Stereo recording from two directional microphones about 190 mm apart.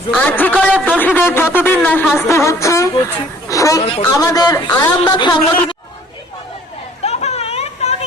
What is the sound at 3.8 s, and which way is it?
Speech, 30° left (ahead or behind).